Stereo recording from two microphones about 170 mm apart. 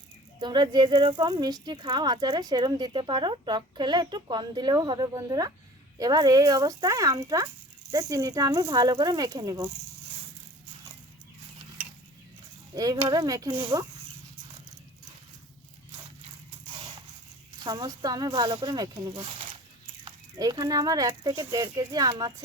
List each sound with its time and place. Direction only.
0.3 s speech: 25° right (ahead or behind)
12.7 s speech: 20° right (ahead or behind)
17.6 s speech: 25° right (ahead or behind)